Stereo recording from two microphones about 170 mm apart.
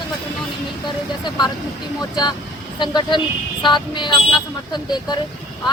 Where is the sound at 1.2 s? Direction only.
25° left (ahead or behind).